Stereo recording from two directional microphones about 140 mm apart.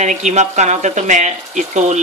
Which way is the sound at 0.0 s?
60° right (ahead or behind).